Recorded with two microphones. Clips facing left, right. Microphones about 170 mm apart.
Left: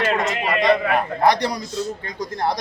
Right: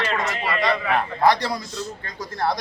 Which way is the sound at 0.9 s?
15° left (ahead or behind).